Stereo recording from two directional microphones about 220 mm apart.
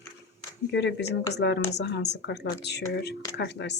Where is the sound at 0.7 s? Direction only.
50° left (ahead or behind).